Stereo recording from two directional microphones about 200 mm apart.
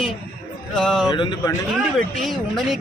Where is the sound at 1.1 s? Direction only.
20° left (ahead or behind).